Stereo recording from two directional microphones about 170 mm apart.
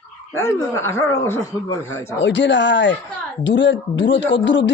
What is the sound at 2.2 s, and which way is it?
A man's voice, 90° left.